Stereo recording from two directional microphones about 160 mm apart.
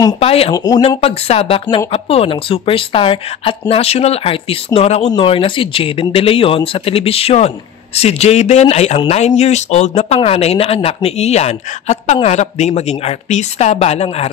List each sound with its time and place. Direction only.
0.2 s speech: 40° left (ahead or behind)
0.5 s speech: 25° left (ahead or behind)
0.8 s speech: 40° left (ahead or behind)